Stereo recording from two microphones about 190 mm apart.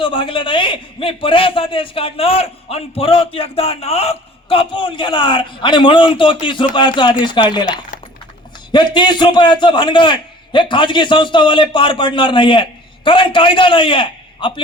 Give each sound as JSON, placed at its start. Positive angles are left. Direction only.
{"t": 0.0, "sound": "a man's voice", "side_deg": 25}